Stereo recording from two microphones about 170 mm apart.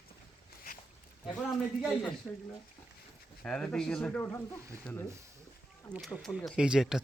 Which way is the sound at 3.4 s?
5° left (ahead or behind).